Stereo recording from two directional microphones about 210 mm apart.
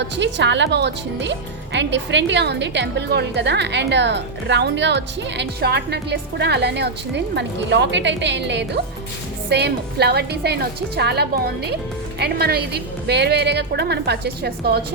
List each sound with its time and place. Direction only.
0.0 s a woman's voice: 60° right (ahead or behind)